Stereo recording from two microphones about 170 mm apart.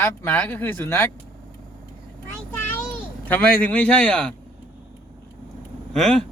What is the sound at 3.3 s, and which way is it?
Speech, 10° left (ahead or behind).